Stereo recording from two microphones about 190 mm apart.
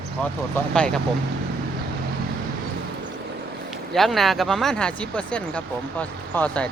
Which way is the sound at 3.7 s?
Centre (ahead or behind).